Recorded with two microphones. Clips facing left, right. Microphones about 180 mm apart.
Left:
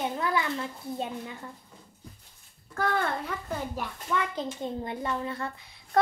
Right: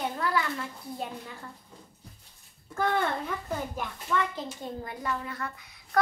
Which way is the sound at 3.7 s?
15° left (ahead or behind).